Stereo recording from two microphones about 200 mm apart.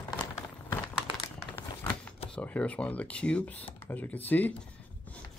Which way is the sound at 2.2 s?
5° left (ahead or behind).